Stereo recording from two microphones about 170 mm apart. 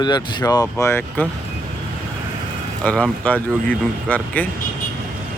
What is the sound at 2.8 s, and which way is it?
Speech, 10° left (ahead or behind).